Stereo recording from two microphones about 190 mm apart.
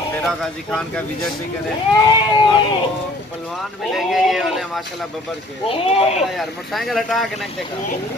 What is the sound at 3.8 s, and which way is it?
Speech, centre (ahead or behind).